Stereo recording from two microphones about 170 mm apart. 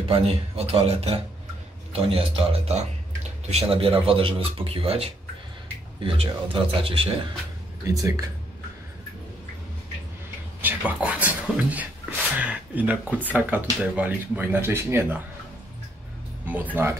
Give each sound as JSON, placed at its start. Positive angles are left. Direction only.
{"t": 0.1, "sound": "speech", "side_deg": -35}
{"t": 7.8, "sound": "speech", "side_deg": -20}
{"t": 10.6, "sound": "a sound", "side_deg": -10}
{"t": 13.2, "sound": "speech", "side_deg": -10}
{"t": 16.4, "sound": "speech", "side_deg": -10}